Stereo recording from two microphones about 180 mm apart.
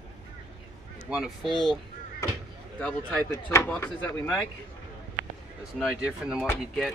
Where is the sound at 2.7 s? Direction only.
10° left (ahead or behind).